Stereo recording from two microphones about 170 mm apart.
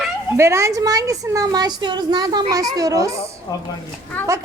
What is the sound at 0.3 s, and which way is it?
A woman's voice, 15° right (ahead or behind).